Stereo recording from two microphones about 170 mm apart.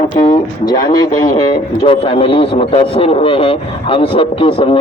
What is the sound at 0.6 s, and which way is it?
A man's voice, 25° left (ahead or behind).